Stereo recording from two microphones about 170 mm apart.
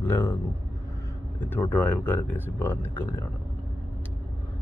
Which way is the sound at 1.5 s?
10° left (ahead or behind).